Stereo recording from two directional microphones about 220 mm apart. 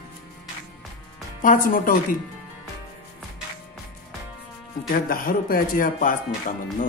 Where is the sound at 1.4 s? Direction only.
40° left (ahead or behind).